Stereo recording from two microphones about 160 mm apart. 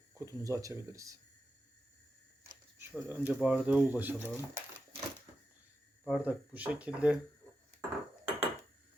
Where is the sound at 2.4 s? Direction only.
15° right (ahead or behind).